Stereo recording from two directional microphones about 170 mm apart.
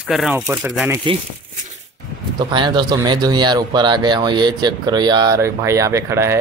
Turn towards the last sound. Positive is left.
turn(degrees=-15)  # may be behind; listen again after turning